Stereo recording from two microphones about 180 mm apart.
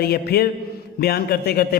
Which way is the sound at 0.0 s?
60° left (ahead or behind).